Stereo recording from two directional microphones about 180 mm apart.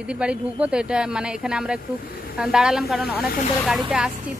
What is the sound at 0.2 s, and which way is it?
Speech, 5° right (ahead or behind).